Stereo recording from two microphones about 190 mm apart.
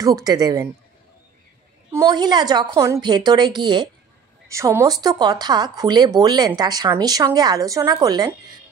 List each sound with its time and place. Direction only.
0.0 s speech: 20° right (ahead or behind)
1.9 s speech: 15° right (ahead or behind)